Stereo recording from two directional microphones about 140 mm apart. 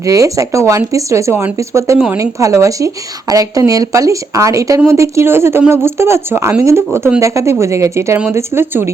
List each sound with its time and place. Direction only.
0.0 s speech: 25° right (ahead or behind)